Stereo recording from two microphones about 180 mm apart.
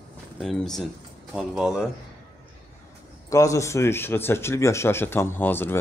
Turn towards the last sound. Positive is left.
turn(degrees=10)  # may be behind; listen again after turning